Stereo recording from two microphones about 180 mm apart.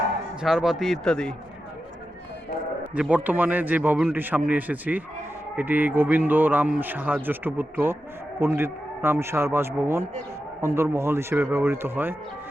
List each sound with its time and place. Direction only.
0.4 s speech: centre (ahead or behind)
2.9 s a man's voice: 10° right (ahead or behind)